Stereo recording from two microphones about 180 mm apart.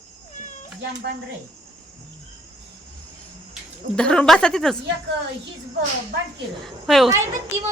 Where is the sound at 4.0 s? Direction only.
5° left (ahead or behind).